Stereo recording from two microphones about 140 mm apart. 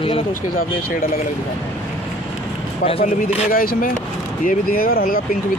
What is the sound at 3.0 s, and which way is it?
Speech, 90° left.